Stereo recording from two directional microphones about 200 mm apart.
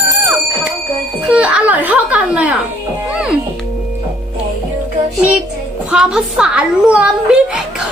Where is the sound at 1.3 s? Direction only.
5° right (ahead or behind).